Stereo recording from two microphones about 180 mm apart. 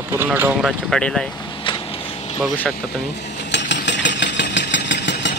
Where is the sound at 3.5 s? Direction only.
75° left (ahead or behind).